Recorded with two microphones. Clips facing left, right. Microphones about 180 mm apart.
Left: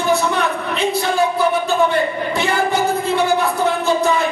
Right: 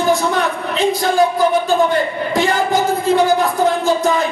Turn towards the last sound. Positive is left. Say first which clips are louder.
# right 3 dB
turn(degrees=-45)  # may be behind; listen again after turning